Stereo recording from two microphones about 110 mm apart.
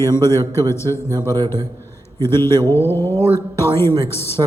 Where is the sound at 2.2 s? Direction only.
25° left (ahead or behind).